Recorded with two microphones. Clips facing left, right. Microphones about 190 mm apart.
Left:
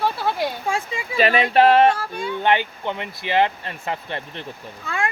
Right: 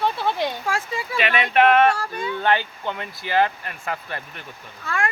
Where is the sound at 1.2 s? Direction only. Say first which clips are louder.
Left 3 dB; 35° left (ahead or behind).